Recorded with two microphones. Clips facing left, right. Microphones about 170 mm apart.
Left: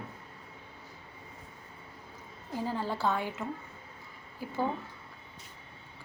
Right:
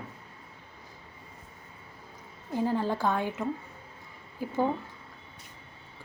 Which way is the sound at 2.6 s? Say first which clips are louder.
Right 5 dB; 15° right (ahead or behind).